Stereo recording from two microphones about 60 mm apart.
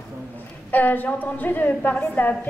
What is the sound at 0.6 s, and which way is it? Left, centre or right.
A woman's voice, left.